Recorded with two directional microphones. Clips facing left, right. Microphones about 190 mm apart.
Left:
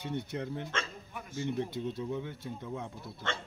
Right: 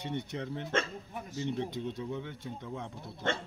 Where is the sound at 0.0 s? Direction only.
5° left (ahead or behind).